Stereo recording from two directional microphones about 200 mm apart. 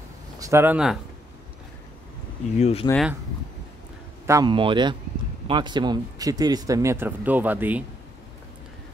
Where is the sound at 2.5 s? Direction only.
30° left (ahead or behind).